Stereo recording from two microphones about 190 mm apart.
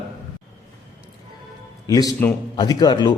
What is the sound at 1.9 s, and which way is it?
A man's voice, 20° left (ahead or behind).